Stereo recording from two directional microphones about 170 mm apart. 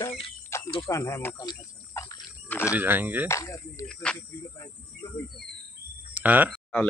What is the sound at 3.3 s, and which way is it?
Speech, 20° left (ahead or behind).